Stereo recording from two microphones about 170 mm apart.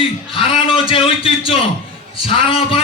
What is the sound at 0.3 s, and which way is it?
A man's voice, 30° left (ahead or behind).